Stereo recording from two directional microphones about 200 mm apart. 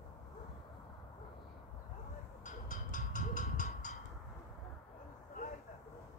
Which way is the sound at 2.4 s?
40° left (ahead or behind).